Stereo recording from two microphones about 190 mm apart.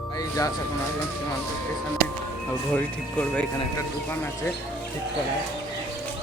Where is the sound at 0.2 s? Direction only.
20° left (ahead or behind).